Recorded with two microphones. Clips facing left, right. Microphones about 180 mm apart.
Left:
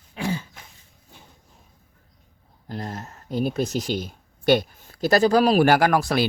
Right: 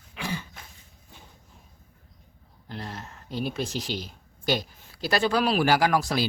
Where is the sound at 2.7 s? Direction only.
40° left (ahead or behind).